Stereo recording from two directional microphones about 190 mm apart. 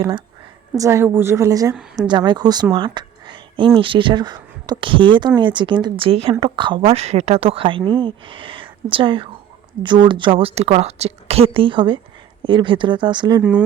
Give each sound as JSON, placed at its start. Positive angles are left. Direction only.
{"t": 0.8, "sound": "a woman's voice", "side_deg": -15}
{"t": 13.4, "sound": "a woman's voice", "side_deg": -5}